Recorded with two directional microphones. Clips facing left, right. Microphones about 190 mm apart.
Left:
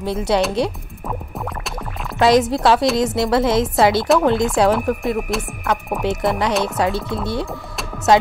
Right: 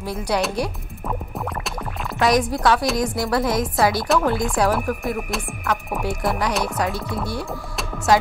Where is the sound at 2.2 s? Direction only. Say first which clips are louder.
Left 4 dB; 25° left (ahead or behind).